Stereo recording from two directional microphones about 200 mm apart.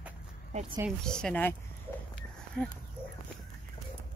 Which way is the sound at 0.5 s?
35° right (ahead or behind).